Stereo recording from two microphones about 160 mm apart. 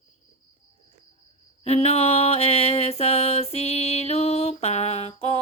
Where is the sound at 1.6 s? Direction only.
40° left (ahead or behind).